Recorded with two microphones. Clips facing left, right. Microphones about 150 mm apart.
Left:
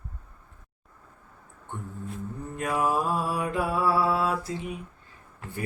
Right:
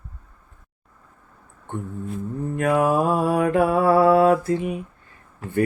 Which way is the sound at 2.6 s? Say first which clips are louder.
Right 7 dB; 65° right (ahead or behind).